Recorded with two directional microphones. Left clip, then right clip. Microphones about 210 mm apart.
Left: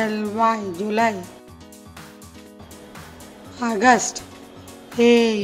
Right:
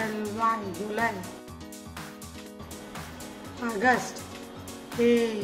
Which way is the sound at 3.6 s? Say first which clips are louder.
Left 8 dB; 40° left (ahead or behind).